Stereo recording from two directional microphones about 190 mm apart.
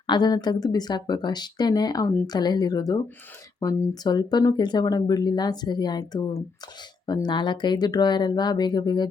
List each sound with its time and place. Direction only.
0.1 s speech: 20° left (ahead or behind)